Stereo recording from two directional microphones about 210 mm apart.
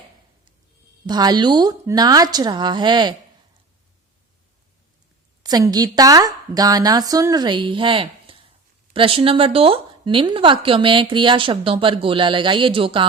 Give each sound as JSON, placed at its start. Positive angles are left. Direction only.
{"t": 1.0, "sound": "speech", "side_deg": -20}
{"t": 5.4, "sound": "a woman's voice", "side_deg": -20}